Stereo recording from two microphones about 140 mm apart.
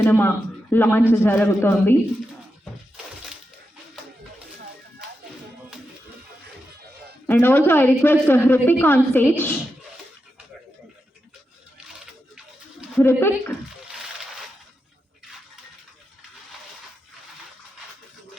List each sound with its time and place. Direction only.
0.0 s a man's voice: 15° left (ahead or behind)
7.3 s a woman's voice: 15° left (ahead or behind)
13.0 s a woman's voice: 15° left (ahead or behind)